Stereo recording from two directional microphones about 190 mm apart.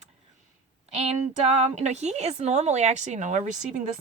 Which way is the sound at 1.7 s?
35° right (ahead or behind).